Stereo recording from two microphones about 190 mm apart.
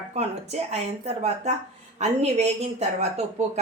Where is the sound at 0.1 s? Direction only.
35° right (ahead or behind).